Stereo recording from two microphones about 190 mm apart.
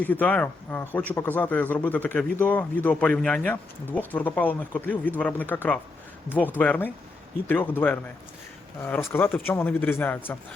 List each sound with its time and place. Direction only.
0.0 s speech: 10° left (ahead or behind)